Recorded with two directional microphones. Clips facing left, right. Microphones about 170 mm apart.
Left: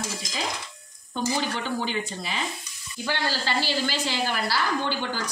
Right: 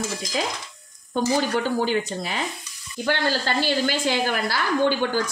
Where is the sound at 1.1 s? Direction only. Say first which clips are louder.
Right 6 dB; 45° right (ahead or behind).